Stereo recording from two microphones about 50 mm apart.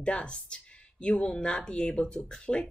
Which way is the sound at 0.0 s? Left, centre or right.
Left.